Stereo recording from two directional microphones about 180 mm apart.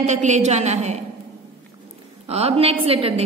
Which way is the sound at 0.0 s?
40° right (ahead or behind).